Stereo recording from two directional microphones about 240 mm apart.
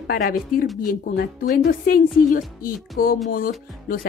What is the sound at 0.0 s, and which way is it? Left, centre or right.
A woman's voice, left.